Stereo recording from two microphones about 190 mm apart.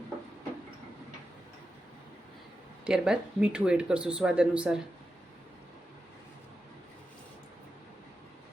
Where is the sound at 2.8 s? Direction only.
5° right (ahead or behind).